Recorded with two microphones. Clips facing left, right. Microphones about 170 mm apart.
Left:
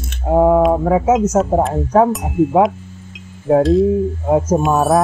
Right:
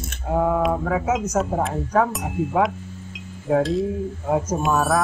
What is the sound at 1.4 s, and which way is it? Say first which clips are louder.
Speech: left 7 dB; centre (ahead or behind).